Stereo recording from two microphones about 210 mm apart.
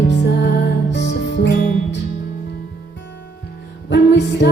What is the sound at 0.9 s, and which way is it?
Music, 55° left (ahead or behind).